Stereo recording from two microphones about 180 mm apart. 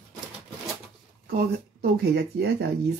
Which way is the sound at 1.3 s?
60° right (ahead or behind).